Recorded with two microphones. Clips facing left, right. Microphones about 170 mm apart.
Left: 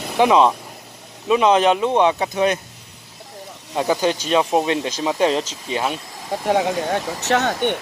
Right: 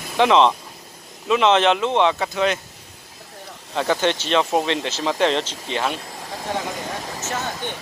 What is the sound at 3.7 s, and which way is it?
Speech, 15° left (ahead or behind).